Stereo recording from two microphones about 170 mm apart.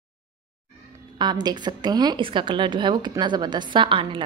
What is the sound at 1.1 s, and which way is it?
A woman's voice, 25° right (ahead or behind).